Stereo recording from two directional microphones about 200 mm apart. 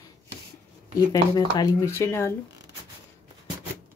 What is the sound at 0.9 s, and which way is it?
Speech, 20° left (ahead or behind).